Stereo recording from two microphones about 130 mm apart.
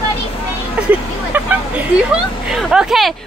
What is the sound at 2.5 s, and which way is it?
Speech, 5° right (ahead or behind).